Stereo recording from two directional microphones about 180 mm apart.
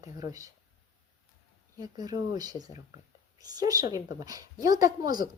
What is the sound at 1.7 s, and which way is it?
A woman's voice, 20° right (ahead or behind).